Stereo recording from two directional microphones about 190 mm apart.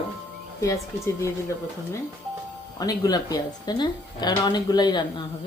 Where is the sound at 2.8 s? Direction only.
20° left (ahead or behind).